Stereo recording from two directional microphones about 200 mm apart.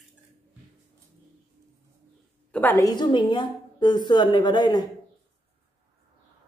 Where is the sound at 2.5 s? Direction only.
10° left (ahead or behind).